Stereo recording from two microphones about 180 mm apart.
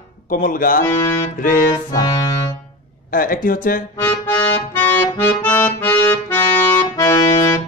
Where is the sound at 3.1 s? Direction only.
50° left (ahead or behind).